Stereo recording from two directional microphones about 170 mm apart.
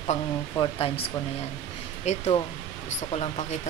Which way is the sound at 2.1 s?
40° left (ahead or behind).